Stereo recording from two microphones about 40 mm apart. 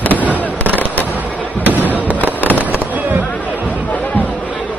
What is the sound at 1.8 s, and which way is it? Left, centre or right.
Fireworks, left.